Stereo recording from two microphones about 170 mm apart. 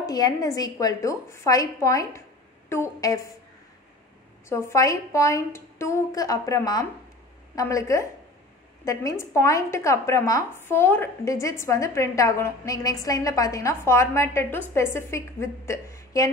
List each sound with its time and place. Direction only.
0.0 s a woman's voice: 20° left (ahead or behind)
4.5 s a woman's voice: 15° left (ahead or behind)